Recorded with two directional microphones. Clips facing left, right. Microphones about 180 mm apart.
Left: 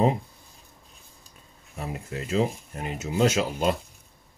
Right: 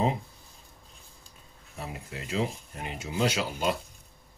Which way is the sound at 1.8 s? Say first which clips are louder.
Left 5 dB; 45° left (ahead or behind).